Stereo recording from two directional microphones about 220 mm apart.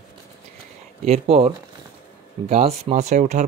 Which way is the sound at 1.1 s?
25° right (ahead or behind).